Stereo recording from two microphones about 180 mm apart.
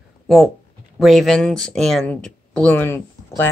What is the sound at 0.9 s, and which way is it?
Speech, centre (ahead or behind).